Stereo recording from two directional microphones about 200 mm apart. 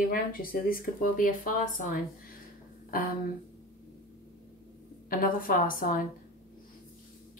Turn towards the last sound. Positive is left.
turn(degrees=45)  # may be behind; listen again after turning